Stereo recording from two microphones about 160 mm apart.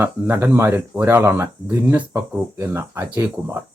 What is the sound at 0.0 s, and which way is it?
A man's voice, 10° right (ahead or behind).